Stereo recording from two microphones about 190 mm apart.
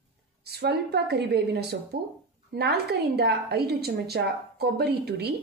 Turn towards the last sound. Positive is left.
turn(degrees=-60)  # may be behind; listen again after turning